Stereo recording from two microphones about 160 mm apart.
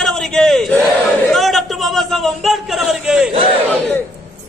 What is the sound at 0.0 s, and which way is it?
Battle cry, 5° left (ahead or behind).